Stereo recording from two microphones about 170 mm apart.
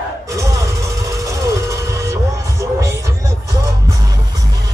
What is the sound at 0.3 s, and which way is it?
Music, 20° right (ahead or behind).